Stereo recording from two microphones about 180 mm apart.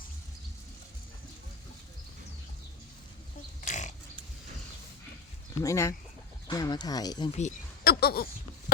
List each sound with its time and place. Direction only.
3.6 s pig: 45° left (ahead or behind)
5.6 s speech: 15° left (ahead or behind)
7.3 s speech: 40° left (ahead or behind)
7.9 s a sound: 60° left (ahead or behind)